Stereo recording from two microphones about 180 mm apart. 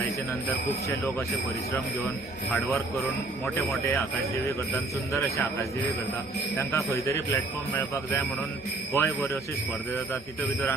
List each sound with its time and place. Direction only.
6.6 s speech: 15° left (ahead or behind)
8.9 s speech: 15° left (ahead or behind)